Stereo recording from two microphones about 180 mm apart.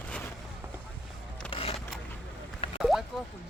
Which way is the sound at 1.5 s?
30° left (ahead or behind).